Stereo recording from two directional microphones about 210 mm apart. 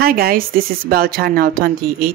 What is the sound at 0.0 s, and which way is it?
A woman's voice, 45° right (ahead or behind).